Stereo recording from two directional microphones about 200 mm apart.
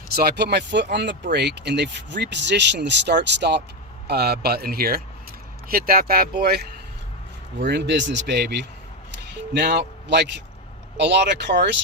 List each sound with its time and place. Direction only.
0.1 s speech: 50° right (ahead or behind)
7.6 s speech: 60° right (ahead or behind)